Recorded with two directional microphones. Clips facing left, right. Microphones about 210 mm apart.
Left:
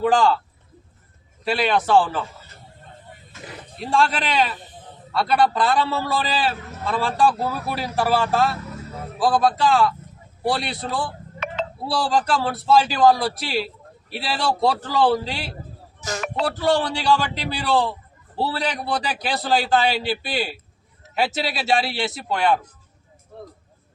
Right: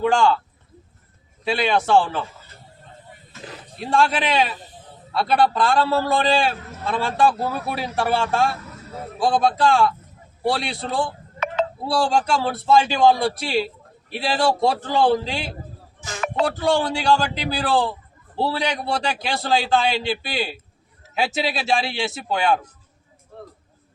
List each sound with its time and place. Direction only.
0.0 s a man's voice: centre (ahead or behind)
1.5 s a man's voice: centre (ahead or behind)
3.8 s a man's voice: centre (ahead or behind)
16.0 s a sound: 40° left (ahead or behind)
16.3 s a man's voice: centre (ahead or behind)